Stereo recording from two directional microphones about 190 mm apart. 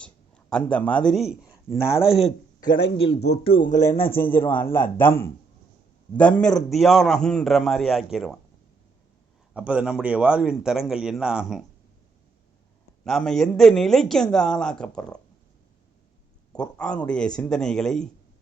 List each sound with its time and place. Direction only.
0.0 s speech: 5° left (ahead or behind)
2.6 s speech: 25° left (ahead or behind)
4.0 s speech: 10° left (ahead or behind)
9.6 s speech: 5° right (ahead or behind)
13.1 s speech: centre (ahead or behind)
16.5 s speech: 5° left (ahead or behind)